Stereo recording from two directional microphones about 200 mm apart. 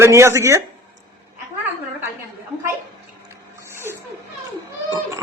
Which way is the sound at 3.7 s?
10° right (ahead or behind).